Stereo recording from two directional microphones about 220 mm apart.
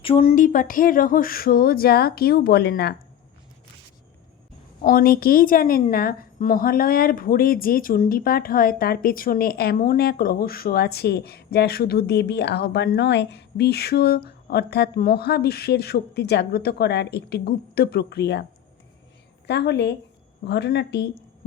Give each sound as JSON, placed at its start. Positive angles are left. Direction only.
{"t": 0.0, "sound": "speech", "side_deg": 25}
{"t": 4.8, "sound": "a woman's voice", "side_deg": 40}
{"t": 19.5, "sound": "a woman's voice", "side_deg": 50}